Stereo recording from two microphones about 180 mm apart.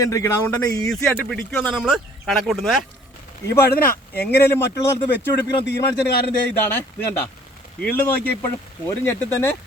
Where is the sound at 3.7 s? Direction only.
60° left (ahead or behind).